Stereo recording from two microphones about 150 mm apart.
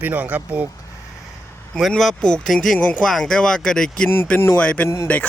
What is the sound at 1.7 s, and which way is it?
Speech, centre (ahead or behind).